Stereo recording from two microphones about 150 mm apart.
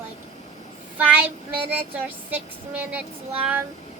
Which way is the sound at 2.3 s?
10° right (ahead or behind).